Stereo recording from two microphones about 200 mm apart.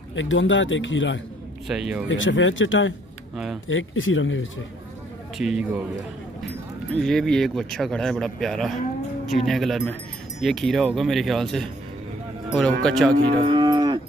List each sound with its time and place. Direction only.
0.1 s a man's voice: 70° left (ahead or behind)
1.7 s speech: 5° right (ahead or behind)
2.0 s a man's voice: 70° left (ahead or behind)
5.4 s speech: centre (ahead or behind)
6.9 s speech: centre (ahead or behind)
13.1 s cattle: 20° right (ahead or behind)